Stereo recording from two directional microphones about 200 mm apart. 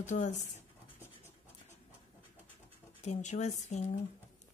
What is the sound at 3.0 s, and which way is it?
Speech, 35° left (ahead or behind).